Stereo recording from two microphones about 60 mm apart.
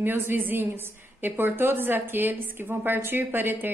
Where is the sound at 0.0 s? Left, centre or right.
Right.